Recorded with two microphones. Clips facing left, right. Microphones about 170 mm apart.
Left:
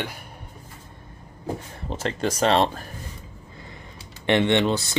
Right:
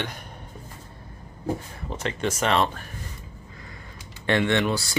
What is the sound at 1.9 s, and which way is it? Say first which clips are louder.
Speech: left 2 dB; 30° left (ahead or behind).